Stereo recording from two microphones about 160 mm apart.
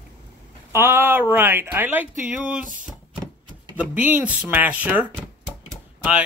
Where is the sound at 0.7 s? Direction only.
15° right (ahead or behind).